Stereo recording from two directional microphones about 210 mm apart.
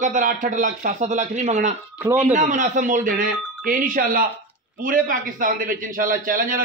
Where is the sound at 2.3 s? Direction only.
35° right (ahead or behind).